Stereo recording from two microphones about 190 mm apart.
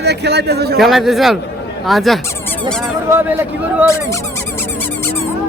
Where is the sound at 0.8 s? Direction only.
Centre (ahead or behind).